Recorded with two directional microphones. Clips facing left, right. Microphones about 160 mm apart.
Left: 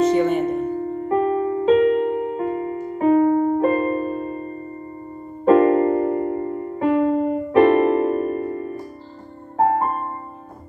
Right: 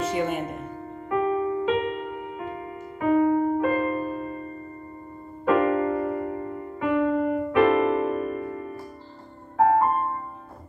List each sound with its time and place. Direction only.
0.1 s speech: 5° right (ahead or behind)
1.0 s music: 40° left (ahead or behind)
5.4 s music: 35° left (ahead or behind)